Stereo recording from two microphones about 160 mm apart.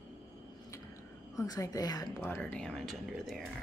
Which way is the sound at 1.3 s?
20° left (ahead or behind).